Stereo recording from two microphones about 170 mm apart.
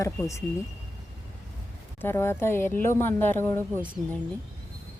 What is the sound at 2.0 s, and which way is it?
Speech, 15° left (ahead or behind).